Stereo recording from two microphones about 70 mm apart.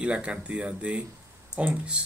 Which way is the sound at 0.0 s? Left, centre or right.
Centre.